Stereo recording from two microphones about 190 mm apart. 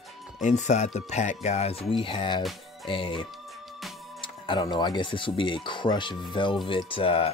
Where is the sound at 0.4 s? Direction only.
40° left (ahead or behind).